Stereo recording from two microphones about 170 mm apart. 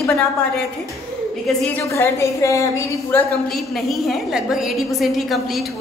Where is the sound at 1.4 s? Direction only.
10° left (ahead or behind).